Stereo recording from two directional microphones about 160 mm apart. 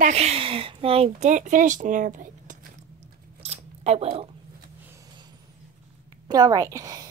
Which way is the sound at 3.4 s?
40° right (ahead or behind).